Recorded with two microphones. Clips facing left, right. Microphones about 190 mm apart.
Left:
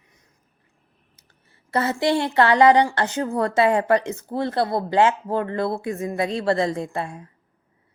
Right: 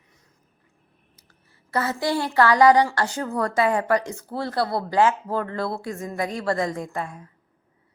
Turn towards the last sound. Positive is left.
turn(degrees=30)  # may be behind; listen again after turning